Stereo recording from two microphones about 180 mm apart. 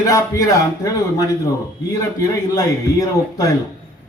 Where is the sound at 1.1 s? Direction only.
15° left (ahead or behind).